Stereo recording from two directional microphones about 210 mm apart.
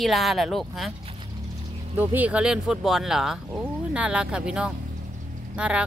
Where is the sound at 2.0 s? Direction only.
10° right (ahead or behind).